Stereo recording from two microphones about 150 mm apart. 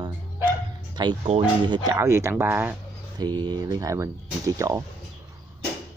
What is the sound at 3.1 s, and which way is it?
Speech, 30° right (ahead or behind).